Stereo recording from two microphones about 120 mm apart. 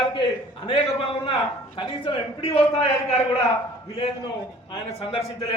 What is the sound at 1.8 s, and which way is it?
A man's voice, 50° left (ahead or behind).